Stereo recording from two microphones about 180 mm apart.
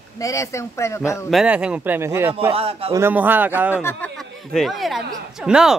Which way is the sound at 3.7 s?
10° left (ahead or behind).